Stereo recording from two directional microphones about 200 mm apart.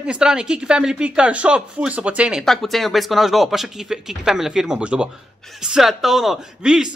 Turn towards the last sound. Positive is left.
turn(degrees=-5)  # may be behind; listen again after turning